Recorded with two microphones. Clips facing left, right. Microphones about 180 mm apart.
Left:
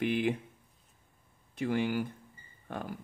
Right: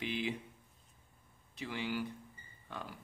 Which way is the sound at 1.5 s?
50° left (ahead or behind).